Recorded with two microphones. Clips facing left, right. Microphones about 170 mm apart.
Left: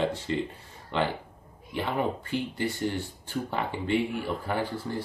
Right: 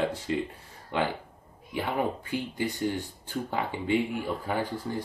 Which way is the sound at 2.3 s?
15° right (ahead or behind).